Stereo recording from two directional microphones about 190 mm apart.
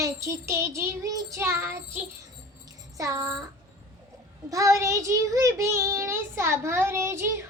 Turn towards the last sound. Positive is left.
turn(degrees=-15)  # may be behind; listen again after turning